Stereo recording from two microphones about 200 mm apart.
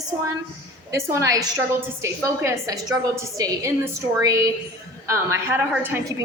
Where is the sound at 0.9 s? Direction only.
15° right (ahead or behind).